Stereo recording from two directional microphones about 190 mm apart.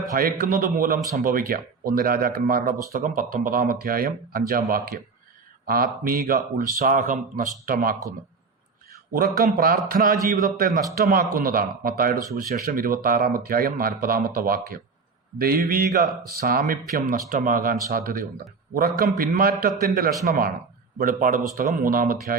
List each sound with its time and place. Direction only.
0.0 s speech: 50° right (ahead or behind)
9.1 s speech: 50° right (ahead or behind)